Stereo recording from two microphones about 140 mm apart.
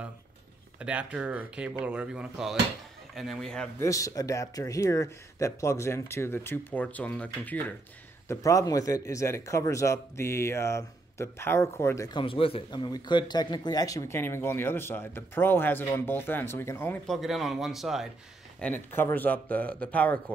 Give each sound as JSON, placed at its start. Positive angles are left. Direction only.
{"t": 0.7, "sound": "a man's voice", "side_deg": -10}
{"t": 3.8, "sound": "speech", "side_deg": 25}
{"t": 8.3, "sound": "speech", "side_deg": 25}
{"t": 12.1, "sound": "speech", "side_deg": 35}
{"t": 17.1, "sound": "speech", "side_deg": 0}
{"t": 18.6, "sound": "speech", "side_deg": 15}